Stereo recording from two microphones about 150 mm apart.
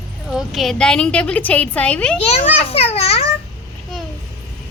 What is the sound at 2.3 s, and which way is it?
Speech, 40° left (ahead or behind).